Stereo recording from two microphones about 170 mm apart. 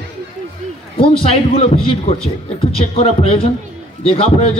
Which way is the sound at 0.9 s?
35° left (ahead or behind).